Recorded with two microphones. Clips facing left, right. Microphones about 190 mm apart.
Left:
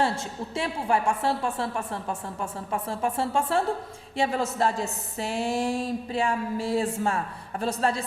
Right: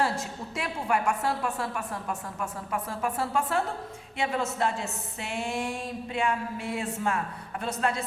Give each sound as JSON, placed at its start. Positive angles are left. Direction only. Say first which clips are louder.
{"t": 0.0, "sound": "a woman's voice", "louder": "left 2 dB", "side_deg": 30}